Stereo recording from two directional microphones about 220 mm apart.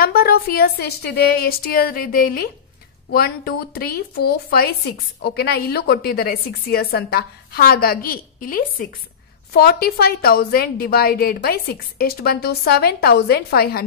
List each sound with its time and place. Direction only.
0.0 s speech: 45° left (ahead or behind)